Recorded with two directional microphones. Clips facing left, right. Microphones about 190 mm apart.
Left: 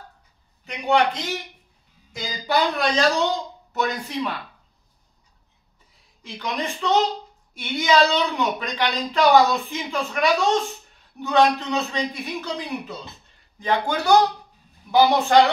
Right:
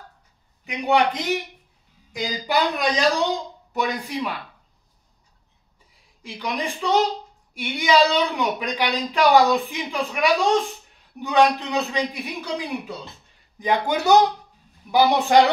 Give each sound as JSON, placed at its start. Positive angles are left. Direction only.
{"t": 0.7, "sound": "speech", "side_deg": -15}
{"t": 6.2, "sound": "speech", "side_deg": -15}
{"t": 13.6, "sound": "speech", "side_deg": -15}